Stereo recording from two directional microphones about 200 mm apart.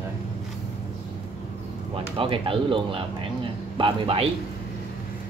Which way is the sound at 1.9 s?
25° right (ahead or behind).